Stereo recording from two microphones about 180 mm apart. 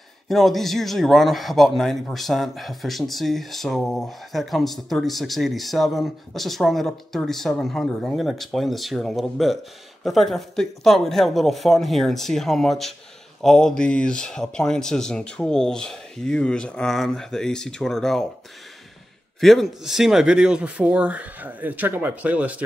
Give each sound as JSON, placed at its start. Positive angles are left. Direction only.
{"t": 0.3, "sound": "a man's voice", "side_deg": 0}
{"t": 19.4, "sound": "speech", "side_deg": 0}